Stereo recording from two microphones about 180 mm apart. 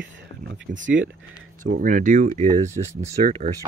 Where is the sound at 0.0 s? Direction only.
75° right (ahead or behind).